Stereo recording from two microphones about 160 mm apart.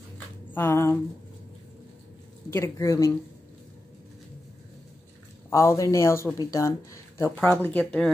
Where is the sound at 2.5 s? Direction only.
20° left (ahead or behind).